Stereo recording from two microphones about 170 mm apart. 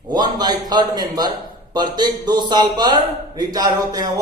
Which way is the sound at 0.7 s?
25° right (ahead or behind).